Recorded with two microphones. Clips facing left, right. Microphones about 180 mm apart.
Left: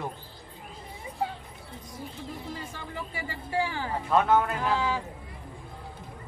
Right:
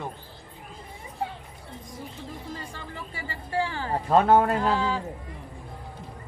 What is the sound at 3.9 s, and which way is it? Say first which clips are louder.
Speech: right 5 dB; 35° right (ahead or behind).